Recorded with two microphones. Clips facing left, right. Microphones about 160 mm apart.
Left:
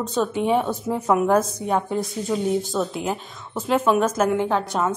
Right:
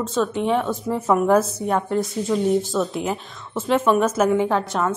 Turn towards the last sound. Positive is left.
turn(degrees=0)  # may be behind; listen again after turning